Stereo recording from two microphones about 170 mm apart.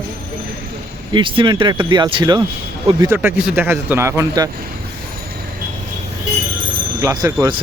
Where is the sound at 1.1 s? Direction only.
30° right (ahead or behind).